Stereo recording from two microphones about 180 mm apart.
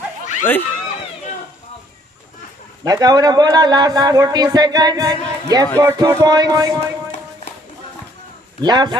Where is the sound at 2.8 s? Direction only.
20° right (ahead or behind).